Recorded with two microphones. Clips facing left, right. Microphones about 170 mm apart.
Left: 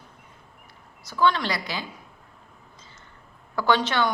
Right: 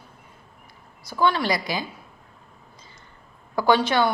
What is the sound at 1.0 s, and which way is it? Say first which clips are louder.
Speech: right 1 dB; 10° right (ahead or behind).